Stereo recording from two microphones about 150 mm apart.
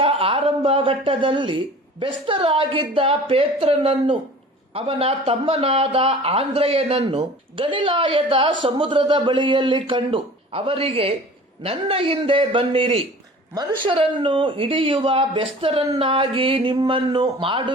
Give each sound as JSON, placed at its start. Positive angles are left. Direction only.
{"t": 0.0, "sound": "speech", "side_deg": -35}
{"t": 13.5, "sound": "speech", "side_deg": -25}
{"t": 13.9, "sound": "speech", "side_deg": -40}